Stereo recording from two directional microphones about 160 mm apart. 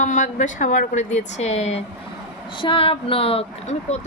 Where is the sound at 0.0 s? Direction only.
50° left (ahead or behind).